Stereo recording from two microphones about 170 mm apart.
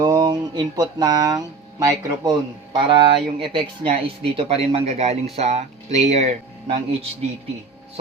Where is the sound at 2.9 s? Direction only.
30° right (ahead or behind).